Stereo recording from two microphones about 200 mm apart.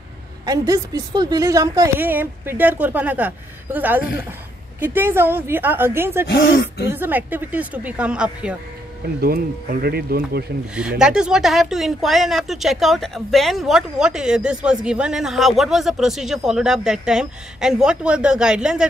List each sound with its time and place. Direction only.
0.5 s a woman's voice: 15° right (ahead or behind)
6.2 s speech: 70° left (ahead or behind)
6.9 s a woman's voice: 10° right (ahead or behind)
9.2 s speech: 50° right (ahead or behind)
10.7 s speech: 5° right (ahead or behind)